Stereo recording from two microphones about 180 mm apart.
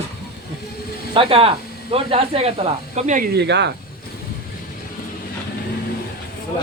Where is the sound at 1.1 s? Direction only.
30° right (ahead or behind).